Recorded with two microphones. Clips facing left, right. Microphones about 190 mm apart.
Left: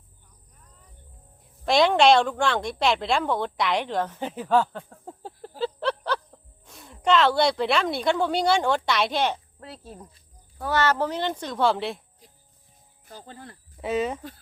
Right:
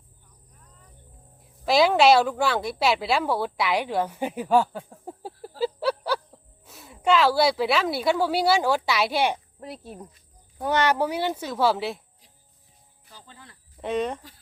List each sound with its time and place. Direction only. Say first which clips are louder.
1.4 s a woman's voice: even; 5° right (ahead or behind)
13.1 s speech: left 7 dB; 50° left (ahead or behind)
13.8 s speech: left 1 dB; 5° left (ahead or behind)